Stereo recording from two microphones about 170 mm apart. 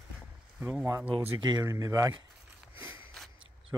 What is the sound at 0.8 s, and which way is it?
Speech, 15° right (ahead or behind).